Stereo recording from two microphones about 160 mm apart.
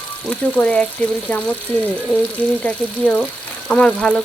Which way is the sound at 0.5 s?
5° left (ahead or behind).